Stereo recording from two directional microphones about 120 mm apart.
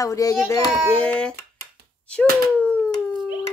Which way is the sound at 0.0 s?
30° left (ahead or behind).